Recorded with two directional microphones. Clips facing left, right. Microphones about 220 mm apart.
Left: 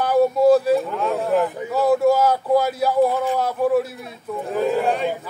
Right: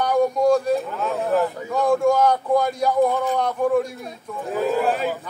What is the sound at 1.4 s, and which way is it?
A man's voice, 5° left (ahead or behind).